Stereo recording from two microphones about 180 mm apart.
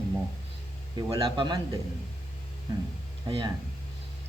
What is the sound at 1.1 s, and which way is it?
Speech, 20° right (ahead or behind).